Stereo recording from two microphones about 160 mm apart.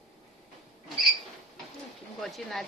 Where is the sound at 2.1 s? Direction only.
Centre (ahead or behind).